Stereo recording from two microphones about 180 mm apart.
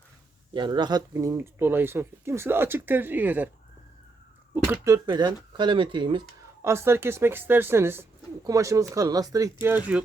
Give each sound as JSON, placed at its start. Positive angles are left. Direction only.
{"t": 0.5, "sound": "speech", "side_deg": -25}
{"t": 4.5, "sound": "speech", "side_deg": -10}
{"t": 6.6, "sound": "speech", "side_deg": -15}
{"t": 9.6, "sound": "speech", "side_deg": -10}